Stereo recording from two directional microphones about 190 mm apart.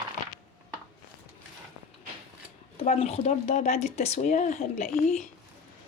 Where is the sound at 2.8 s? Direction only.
35° left (ahead or behind).